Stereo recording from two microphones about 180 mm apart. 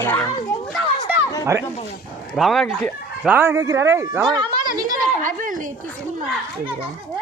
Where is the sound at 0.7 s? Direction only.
5° right (ahead or behind).